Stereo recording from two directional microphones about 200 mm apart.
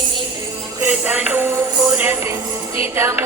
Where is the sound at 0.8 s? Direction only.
5° right (ahead or behind).